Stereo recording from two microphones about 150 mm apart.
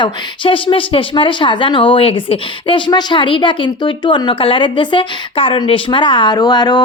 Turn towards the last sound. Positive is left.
turn(degrees=30)  # may be behind; listen again after turning